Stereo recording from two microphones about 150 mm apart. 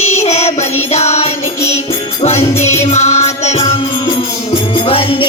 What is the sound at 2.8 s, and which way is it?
Music, 45° left (ahead or behind).